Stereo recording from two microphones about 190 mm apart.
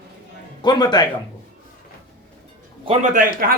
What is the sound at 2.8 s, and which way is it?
Speech, 40° right (ahead or behind).